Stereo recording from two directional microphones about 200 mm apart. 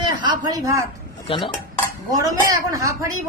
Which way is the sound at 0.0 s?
20° right (ahead or behind).